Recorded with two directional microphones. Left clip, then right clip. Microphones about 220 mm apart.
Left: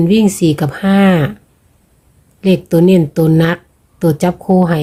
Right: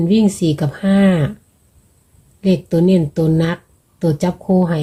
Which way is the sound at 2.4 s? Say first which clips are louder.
Left 5 dB; 15° left (ahead or behind).